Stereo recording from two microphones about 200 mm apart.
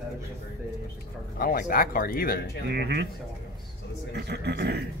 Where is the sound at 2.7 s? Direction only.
55° right (ahead or behind).